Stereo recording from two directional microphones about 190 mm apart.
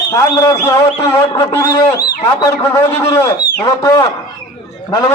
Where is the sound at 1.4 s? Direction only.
15° left (ahead or behind).